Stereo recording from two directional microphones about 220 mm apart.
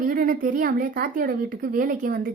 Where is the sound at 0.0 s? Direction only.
40° right (ahead or behind).